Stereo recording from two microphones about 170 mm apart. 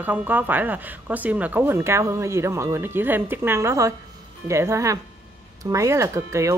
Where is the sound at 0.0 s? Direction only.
10° right (ahead or behind).